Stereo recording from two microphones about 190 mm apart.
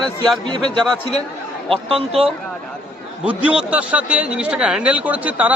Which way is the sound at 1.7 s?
30° right (ahead or behind).